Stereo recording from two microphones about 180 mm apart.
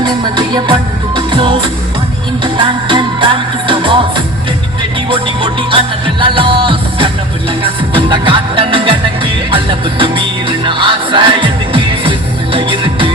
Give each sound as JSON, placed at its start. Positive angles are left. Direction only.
{"t": 0.0, "sound": "music", "side_deg": -25}
{"t": 5.0, "sound": "music", "side_deg": -30}